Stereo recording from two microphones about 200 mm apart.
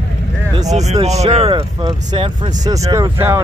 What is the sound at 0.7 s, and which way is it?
Speech, 35° right (ahead or behind).